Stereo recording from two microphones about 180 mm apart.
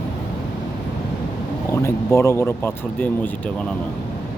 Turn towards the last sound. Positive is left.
turn(degrees=15)  # may be behind; listen again after turning